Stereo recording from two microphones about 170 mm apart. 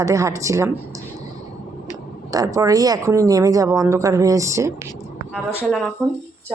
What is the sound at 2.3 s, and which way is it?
A woman's voice, 20° right (ahead or behind).